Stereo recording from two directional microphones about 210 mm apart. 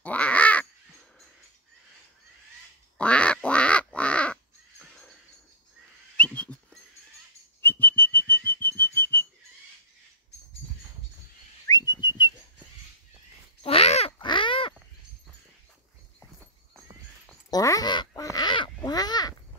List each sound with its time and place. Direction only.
0.0 s crow: 5° left (ahead or behind)
3.0 s quack: 5° left (ahead or behind)
6.1 s whistling: 5° left (ahead or behind)
7.6 s whistle: 10° left (ahead or behind)
11.6 s whistling: 15° left (ahead or behind)
13.6 s a sound: 30° left (ahead or behind)
17.5 s a sound: 15° left (ahead or behind)
18.8 s crow: 20° left (ahead or behind)